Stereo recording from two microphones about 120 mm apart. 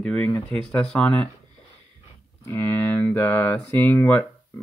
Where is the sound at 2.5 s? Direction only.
20° left (ahead or behind).